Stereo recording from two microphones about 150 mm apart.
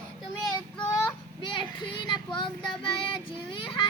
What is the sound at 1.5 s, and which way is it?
Speech, 30° left (ahead or behind).